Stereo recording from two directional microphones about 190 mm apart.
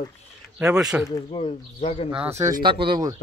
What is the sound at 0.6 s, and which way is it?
Speech, 5° right (ahead or behind).